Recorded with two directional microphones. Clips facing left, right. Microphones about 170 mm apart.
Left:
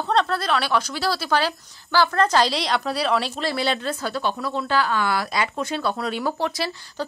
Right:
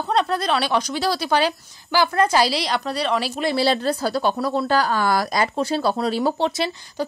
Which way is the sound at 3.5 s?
35° right (ahead or behind).